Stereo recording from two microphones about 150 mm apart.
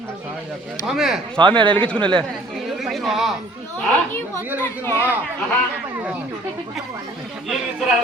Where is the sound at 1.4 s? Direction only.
35° right (ahead or behind).